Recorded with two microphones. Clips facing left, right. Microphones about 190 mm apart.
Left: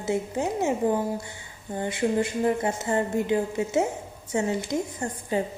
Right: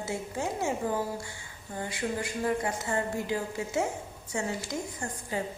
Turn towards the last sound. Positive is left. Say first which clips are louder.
# left 6 dB
turn(degrees=25)  # may be behind; listen again after turning